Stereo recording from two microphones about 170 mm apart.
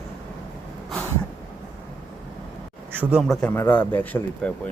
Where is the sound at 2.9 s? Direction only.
10° right (ahead or behind).